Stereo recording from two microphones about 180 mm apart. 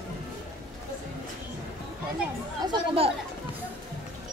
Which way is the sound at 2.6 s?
30° right (ahead or behind).